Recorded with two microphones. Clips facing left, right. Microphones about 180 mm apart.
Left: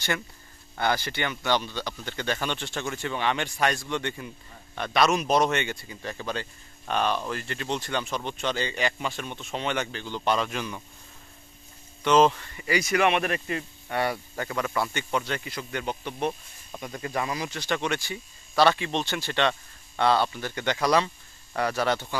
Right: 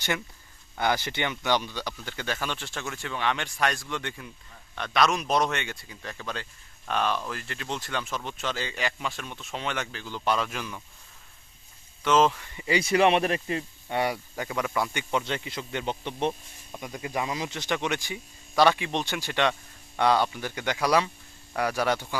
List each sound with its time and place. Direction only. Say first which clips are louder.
0.7 s speech: even; 15° right (ahead or behind)
12.0 s speech: left 2 dB; centre (ahead or behind)
12.5 s speech: right 1 dB; 25° right (ahead or behind)
16.7 s speech: left 1 dB; 10° right (ahead or behind)